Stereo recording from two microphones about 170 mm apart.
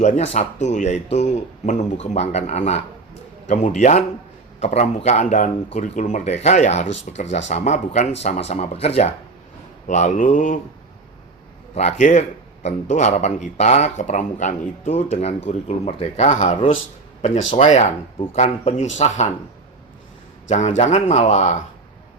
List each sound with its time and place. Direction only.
0.0 s speech: 45° left (ahead or behind)
11.7 s speech: 40° left (ahead or behind)
17.6 s speech: 45° left (ahead or behind)
20.5 s speech: 45° left (ahead or behind)